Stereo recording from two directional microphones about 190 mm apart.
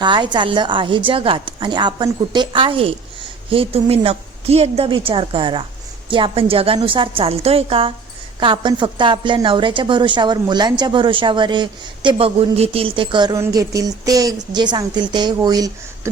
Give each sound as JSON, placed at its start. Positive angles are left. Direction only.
{"t": 0.0, "sound": "a woman's voice", "side_deg": -25}